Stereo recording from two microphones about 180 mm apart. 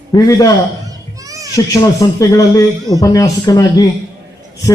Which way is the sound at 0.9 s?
20° right (ahead or behind).